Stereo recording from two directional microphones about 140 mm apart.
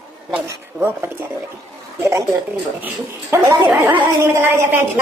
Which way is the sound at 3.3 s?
20° right (ahead or behind).